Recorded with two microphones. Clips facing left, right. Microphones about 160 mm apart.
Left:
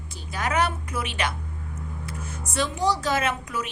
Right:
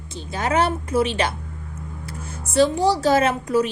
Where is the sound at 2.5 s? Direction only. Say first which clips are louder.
Right 7 dB; 30° right (ahead or behind).